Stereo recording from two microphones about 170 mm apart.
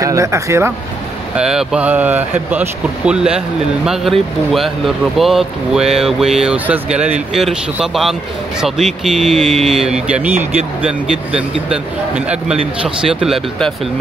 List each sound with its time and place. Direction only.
0.0 s speech: 20° right (ahead or behind)
1.3 s speech: 5° right (ahead or behind)
12.8 s speech: 5° right (ahead or behind)